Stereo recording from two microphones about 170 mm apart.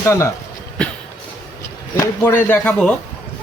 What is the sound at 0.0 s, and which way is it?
Speech, 15° left (ahead or behind).